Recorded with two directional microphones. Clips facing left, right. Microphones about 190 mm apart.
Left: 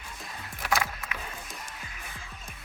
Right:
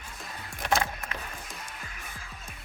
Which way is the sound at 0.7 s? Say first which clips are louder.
Right 2 dB; 25° right (ahead or behind).